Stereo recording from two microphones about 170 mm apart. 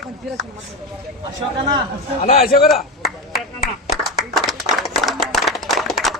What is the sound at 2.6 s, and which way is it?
Chop, centre (ahead or behind).